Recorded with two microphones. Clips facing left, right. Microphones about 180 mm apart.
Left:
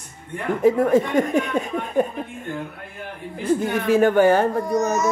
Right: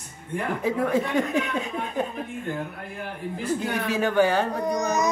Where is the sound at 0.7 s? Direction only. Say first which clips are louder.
Left 8 dB; 45° left (ahead or behind).